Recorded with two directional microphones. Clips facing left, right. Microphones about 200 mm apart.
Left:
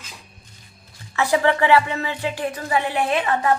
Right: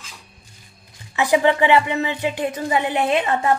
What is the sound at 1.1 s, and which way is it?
Speech, 20° right (ahead or behind).